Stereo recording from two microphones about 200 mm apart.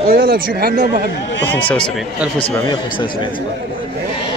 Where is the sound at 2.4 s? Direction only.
25° left (ahead or behind).